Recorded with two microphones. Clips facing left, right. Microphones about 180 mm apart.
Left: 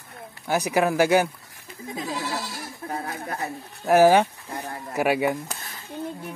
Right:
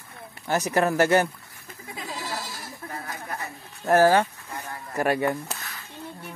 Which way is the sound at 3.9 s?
15° left (ahead or behind).